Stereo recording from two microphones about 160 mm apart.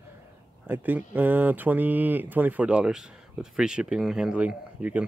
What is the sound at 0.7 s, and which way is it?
Speech, 10° right (ahead or behind).